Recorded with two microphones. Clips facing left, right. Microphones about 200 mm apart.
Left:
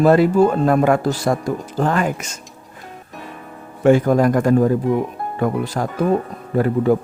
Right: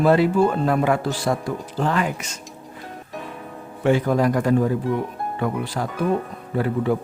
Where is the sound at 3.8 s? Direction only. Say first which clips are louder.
Left 5 dB; 45° left (ahead or behind).